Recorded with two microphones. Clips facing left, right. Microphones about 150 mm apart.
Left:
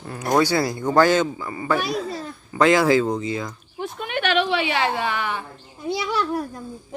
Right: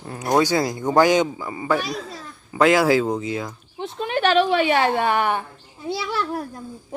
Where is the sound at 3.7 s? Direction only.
30° right (ahead or behind); by 5.4 s 50° right (ahead or behind).